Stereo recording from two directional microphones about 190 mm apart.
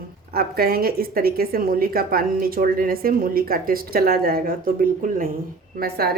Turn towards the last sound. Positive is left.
turn(degrees=-55)  # may be behind; listen again after turning